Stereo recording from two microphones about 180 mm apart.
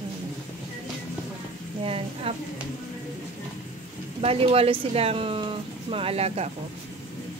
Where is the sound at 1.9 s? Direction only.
30° right (ahead or behind).